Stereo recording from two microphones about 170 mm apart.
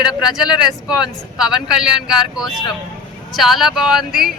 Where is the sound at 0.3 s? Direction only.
25° left (ahead or behind).